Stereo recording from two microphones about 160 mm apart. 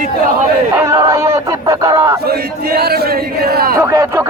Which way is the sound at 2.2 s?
75° right (ahead or behind).